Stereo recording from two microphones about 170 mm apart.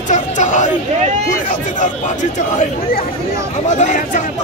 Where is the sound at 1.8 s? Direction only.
45° left (ahead or behind).